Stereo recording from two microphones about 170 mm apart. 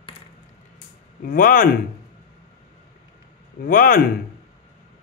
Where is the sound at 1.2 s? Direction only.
55° left (ahead or behind).